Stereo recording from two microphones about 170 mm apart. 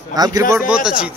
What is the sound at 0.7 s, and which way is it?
Speech, 5° right (ahead or behind).